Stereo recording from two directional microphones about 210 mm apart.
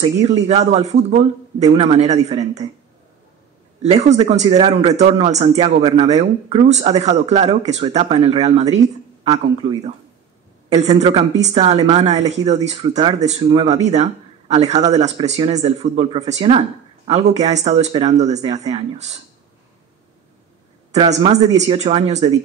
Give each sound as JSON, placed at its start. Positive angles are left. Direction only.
{"t": 0.0, "sound": "speech", "side_deg": -30}
{"t": 3.8, "sound": "speech", "side_deg": -30}
{"t": 20.9, "sound": "speech", "side_deg": -30}